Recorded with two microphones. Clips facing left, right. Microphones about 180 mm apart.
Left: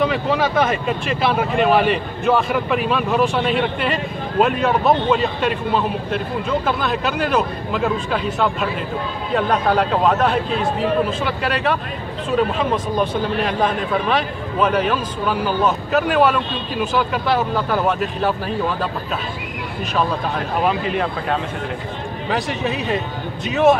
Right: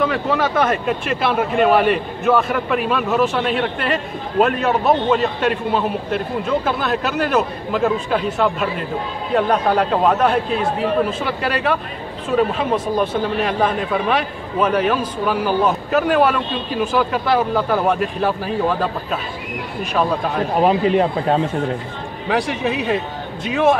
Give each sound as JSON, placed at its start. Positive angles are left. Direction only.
{"t": 0.3, "sound": "a man's voice", "side_deg": 0}
{"t": 12.7, "sound": "a man's voice", "side_deg": -10}
{"t": 20.6, "sound": "speech", "side_deg": -30}
{"t": 22.3, "sound": "a man's voice", "side_deg": -10}